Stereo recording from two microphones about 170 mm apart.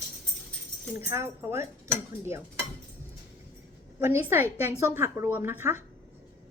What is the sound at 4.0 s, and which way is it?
Speech, 15° right (ahead or behind).